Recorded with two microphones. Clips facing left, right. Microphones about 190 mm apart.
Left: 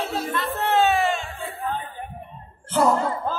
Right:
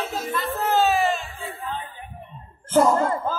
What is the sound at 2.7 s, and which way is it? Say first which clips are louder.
Speech: right 2 dB; 45° right (ahead or behind).